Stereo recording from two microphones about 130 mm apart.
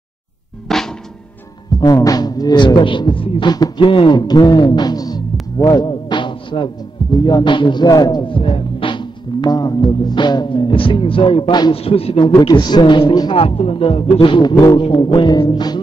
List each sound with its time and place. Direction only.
0.7 s drum: 5° left (ahead or behind)
1.8 s speech: 30° left (ahead or behind); by 12.3 s 50° left (ahead or behind)
12.4 s speech: 35° left (ahead or behind)
13.3 s speech: 45° left (ahead or behind)